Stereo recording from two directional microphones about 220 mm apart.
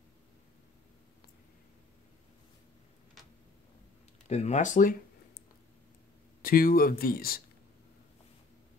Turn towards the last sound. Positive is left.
turn(degrees=40)  # may be behind; listen again after turning